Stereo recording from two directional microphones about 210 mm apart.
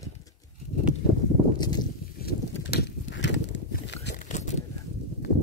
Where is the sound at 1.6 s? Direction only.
20° left (ahead or behind).